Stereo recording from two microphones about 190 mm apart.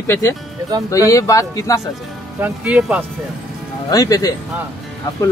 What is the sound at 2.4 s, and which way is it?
Speech, 5° right (ahead or behind).